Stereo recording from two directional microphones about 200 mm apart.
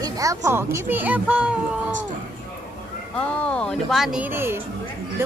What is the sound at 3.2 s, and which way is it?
A woman's voice, 5° left (ahead or behind).